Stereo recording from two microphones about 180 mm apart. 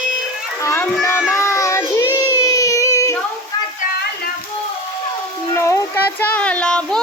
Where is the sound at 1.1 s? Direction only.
15° left (ahead or behind).